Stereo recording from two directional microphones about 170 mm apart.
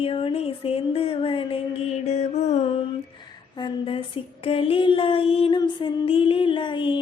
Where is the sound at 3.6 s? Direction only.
30° left (ahead or behind).